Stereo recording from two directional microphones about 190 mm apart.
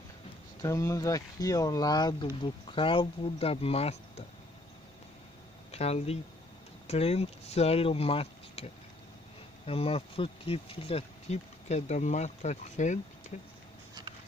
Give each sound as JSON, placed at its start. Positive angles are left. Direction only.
{"t": 0.6, "sound": "speech", "side_deg": 15}
{"t": 5.7, "sound": "speech", "side_deg": 35}